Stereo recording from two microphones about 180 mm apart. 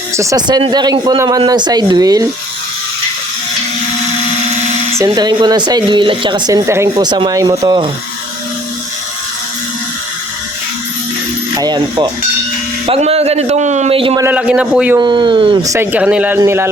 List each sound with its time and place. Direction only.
0.2 s a woman's voice: 20° right (ahead or behind)
5.0 s a woman's voice: 25° right (ahead or behind)
11.5 s a woman's voice: 20° right (ahead or behind)
12.8 s a man's voice: 35° right (ahead or behind)
14.2 s a man's voice: 10° right (ahead or behind)
14.9 s a woman's voice: 25° right (ahead or behind)
15.6 s speech: 15° right (ahead or behind)